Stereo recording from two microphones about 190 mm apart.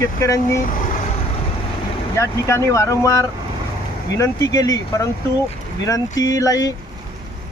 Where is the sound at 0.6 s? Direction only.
45° left (ahead or behind).